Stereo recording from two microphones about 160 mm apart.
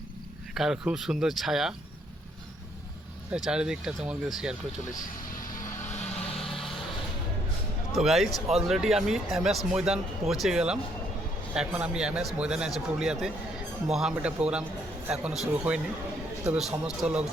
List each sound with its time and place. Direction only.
0.5 s speech: 5° right (ahead or behind)
3.3 s speech: 5° right (ahead or behind)
4.9 s music: 55° left (ahead or behind)
6.3 s vehicle: centre (ahead or behind)
7.9 s a man's voice: centre (ahead or behind)